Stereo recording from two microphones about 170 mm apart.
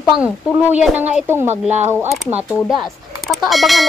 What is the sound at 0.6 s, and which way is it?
A woman's voice, 10° right (ahead or behind).